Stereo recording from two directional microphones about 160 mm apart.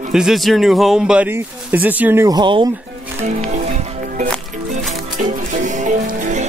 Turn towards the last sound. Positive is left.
turn(degrees=-50)  # may be behind; listen again after turning